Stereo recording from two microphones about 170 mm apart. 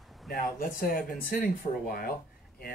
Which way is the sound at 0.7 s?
55° left (ahead or behind).